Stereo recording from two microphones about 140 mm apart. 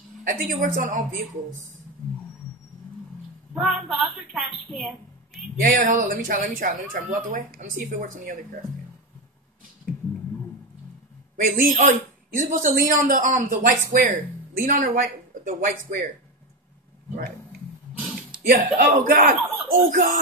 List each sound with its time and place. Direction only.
0.2 s speech: 75° right (ahead or behind)
3.5 s a woman's voice: 5° right (ahead or behind)
5.3 s speech: 75° right (ahead or behind)
11.4 s speech: 70° right (ahead or behind)
17.9 s a sound: 5° right (ahead or behind)
18.3 s a sound: 80° right
18.8 s speech: 75° right (ahead or behind)